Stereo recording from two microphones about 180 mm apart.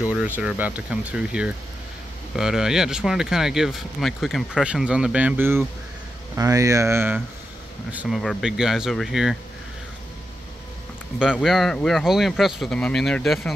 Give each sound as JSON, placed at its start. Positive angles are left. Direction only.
{"t": 0.1, "sound": "speech", "side_deg": -5}
{"t": 11.3, "sound": "speech", "side_deg": 0}